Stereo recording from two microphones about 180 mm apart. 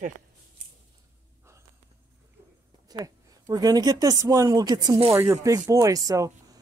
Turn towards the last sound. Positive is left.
turn(degrees=-20)  # may be behind; listen again after turning